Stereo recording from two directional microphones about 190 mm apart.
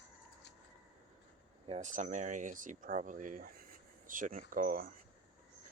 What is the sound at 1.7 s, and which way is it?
Speech, 40° right (ahead or behind).